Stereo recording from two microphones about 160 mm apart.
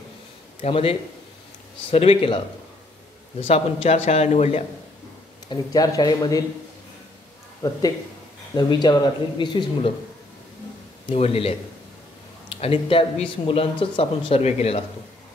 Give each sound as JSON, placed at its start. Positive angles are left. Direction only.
{"t": 0.6, "sound": "speech", "side_deg": 35}
{"t": 3.4, "sound": "speech", "side_deg": 40}
{"t": 5.5, "sound": "speech", "side_deg": 25}
{"t": 7.6, "sound": "speech", "side_deg": 20}
{"t": 11.1, "sound": "speech", "side_deg": 35}